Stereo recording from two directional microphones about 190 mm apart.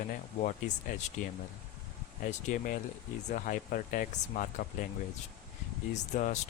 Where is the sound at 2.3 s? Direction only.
40° left (ahead or behind).